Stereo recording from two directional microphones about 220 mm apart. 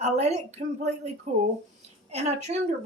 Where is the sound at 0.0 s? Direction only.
30° right (ahead or behind).